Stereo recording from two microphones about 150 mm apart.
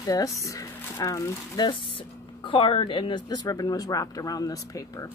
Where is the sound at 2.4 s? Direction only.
35° left (ahead or behind).